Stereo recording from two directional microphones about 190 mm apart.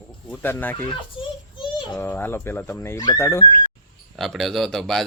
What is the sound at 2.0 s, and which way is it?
Speech, 10° left (ahead or behind).